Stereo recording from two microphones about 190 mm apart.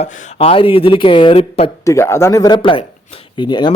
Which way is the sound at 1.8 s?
15° left (ahead or behind).